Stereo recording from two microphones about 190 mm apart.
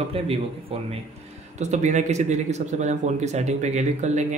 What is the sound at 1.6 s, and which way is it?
Speech, 40° right (ahead or behind).